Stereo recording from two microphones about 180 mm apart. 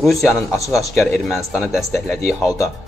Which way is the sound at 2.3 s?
15° left (ahead or behind).